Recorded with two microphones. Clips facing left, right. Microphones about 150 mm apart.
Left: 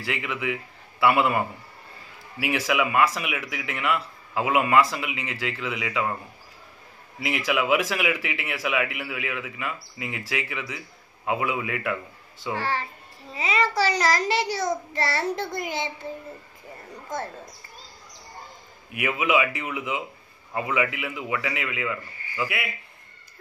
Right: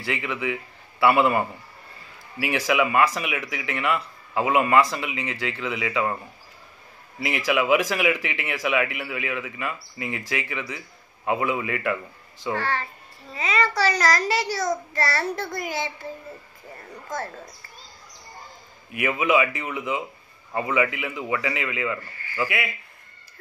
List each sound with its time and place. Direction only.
0.0 s a man's voice: centre (ahead or behind)
7.2 s a child's voice: centre (ahead or behind)
13.3 s a child's voice: 25° left (ahead or behind)
18.9 s speech: 5° left (ahead or behind)
22.1 s a sound: 20° left (ahead or behind)
22.4 s speech: 5° left (ahead or behind)